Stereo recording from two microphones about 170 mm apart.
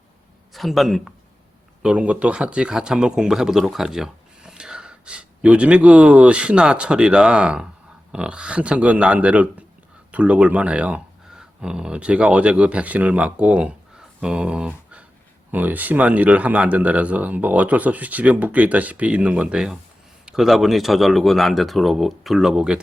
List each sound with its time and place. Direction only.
0.5 s a man's voice: centre (ahead or behind)